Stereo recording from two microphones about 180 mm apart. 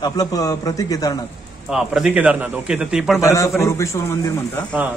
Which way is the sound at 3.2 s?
15° left (ahead or behind).